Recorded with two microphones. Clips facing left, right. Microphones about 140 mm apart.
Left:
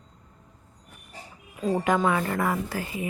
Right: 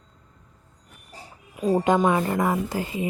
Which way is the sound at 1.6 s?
20° right (ahead or behind).